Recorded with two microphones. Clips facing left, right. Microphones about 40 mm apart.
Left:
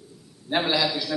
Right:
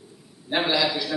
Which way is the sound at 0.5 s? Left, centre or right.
Centre.